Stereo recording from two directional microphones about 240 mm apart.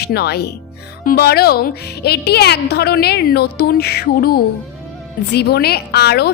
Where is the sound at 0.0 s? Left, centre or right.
Left.